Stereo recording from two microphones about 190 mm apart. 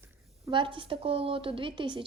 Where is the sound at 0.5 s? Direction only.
25° right (ahead or behind).